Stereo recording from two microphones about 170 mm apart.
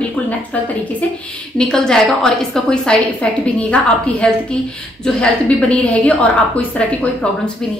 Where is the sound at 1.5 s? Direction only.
5° left (ahead or behind).